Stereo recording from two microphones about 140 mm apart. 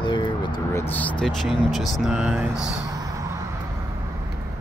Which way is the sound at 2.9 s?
25° right (ahead or behind).